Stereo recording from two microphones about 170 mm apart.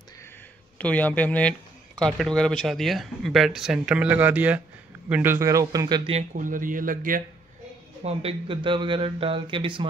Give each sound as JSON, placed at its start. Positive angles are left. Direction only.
{"t": 0.7, "sound": "a man's voice", "side_deg": 10}
{"t": 6.1, "sound": "speech", "side_deg": -50}
{"t": 8.0, "sound": "speech", "side_deg": -35}